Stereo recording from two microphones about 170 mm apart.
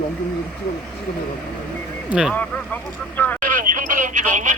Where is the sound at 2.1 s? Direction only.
5° right (ahead or behind).